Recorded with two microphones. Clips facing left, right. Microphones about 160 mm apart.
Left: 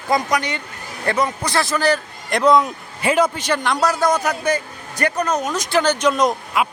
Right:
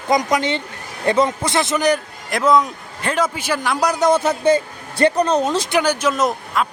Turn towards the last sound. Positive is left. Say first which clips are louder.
# left 1 dB
turn(degrees=5)  # may be behind; listen again after turning